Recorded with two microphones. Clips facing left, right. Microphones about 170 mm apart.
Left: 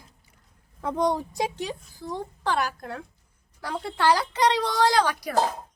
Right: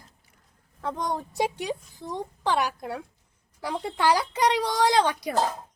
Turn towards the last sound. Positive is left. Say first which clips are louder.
# even
turn(degrees=-20)  # may be behind; listen again after turning